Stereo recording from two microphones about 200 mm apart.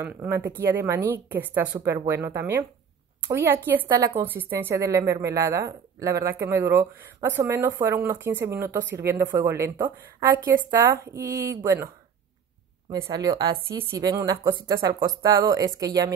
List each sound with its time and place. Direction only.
0.0 s a woman's voice: 10° right (ahead or behind)
12.9 s a woman's voice: 20° right (ahead or behind)